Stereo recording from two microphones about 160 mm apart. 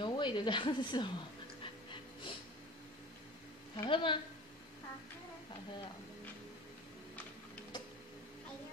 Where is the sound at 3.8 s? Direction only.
30° left (ahead or behind).